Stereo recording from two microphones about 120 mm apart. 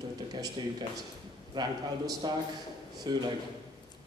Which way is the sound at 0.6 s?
40° right (ahead or behind).